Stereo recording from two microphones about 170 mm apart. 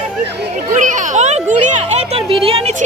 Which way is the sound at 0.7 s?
50° right (ahead or behind).